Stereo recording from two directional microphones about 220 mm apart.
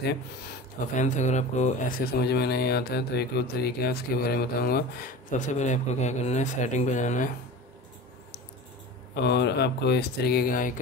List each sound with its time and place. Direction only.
0.9 s speech: 35° left (ahead or behind)
5.4 s speech: 35° left (ahead or behind)
9.1 s speech: 50° left (ahead or behind)